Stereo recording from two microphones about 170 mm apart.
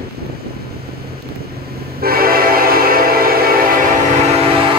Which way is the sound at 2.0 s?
60° right (ahead or behind).